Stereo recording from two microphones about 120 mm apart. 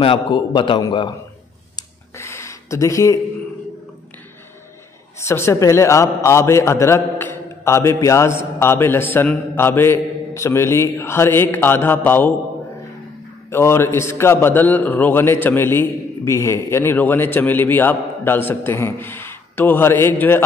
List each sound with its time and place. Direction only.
0.0 s a man's voice: 45° left (ahead or behind)
1.8 s a sound: 20° left (ahead or behind)
5.2 s a man's voice: 20° left (ahead or behind)
13.5 s a man's voice: 20° left (ahead or behind)